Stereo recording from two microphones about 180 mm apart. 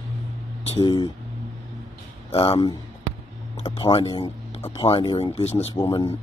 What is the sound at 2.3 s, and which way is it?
Speech, 30° left (ahead or behind).